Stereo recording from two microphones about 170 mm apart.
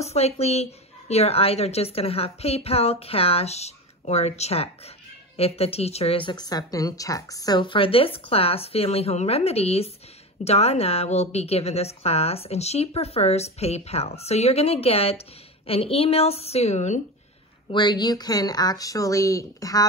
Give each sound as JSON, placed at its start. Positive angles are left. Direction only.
{"t": 0.0, "sound": "a woman's voice", "side_deg": 40}
{"t": 17.6, "sound": "speech", "side_deg": 25}